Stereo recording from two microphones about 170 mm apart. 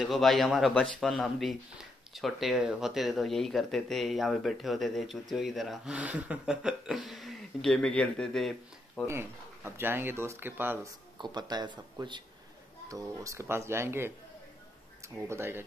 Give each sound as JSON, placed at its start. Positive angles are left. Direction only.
{"t": 0.0, "sound": "speech", "side_deg": 0}
{"t": 9.0, "sound": "speech", "side_deg": -15}
{"t": 11.1, "sound": "speech", "side_deg": -25}
{"t": 15.2, "sound": "speech", "side_deg": -15}